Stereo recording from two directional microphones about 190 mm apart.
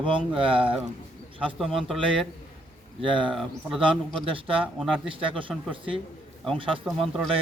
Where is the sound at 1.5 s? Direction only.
Centre (ahead or behind).